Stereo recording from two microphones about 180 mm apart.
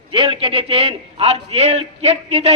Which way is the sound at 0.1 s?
30° right (ahead or behind).